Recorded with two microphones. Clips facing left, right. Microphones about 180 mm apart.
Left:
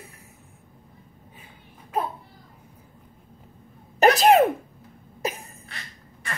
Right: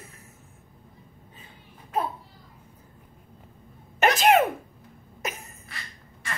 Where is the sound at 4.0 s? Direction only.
35° left (ahead or behind).